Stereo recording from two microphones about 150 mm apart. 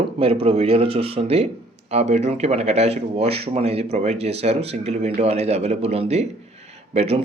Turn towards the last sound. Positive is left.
turn(degrees=-45)  # may be behind; listen again after turning